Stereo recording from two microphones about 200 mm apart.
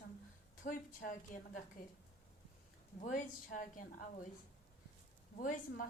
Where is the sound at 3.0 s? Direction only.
40° left (ahead or behind).